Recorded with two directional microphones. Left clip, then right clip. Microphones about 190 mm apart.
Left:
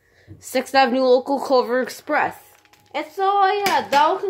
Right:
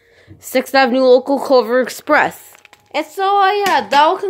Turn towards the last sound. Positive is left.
turn(degrees=-55)  # may be behind; listen again after turning